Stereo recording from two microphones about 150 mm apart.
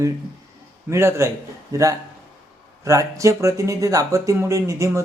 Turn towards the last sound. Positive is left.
turn(degrees=-20)  # may be behind; listen again after turning